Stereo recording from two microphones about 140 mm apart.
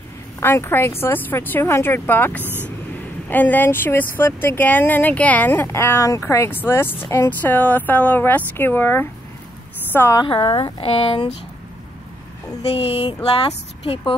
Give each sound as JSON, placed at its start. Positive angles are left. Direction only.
{"t": 0.4, "sound": "speech", "side_deg": 15}
{"t": 2.4, "sound": "speech", "side_deg": -15}
{"t": 3.3, "sound": "a woman's voice", "side_deg": 15}
{"t": 10.2, "sound": "speech", "side_deg": 40}
{"t": 12.7, "sound": "speech", "side_deg": 45}